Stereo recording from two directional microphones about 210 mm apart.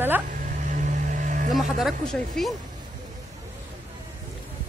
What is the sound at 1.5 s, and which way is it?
Speech, centre (ahead or behind).